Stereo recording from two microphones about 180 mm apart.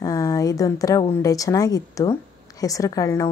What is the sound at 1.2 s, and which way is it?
A woman's voice, 20° left (ahead or behind).